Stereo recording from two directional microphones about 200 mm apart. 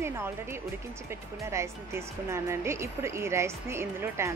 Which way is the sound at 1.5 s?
15° right (ahead or behind).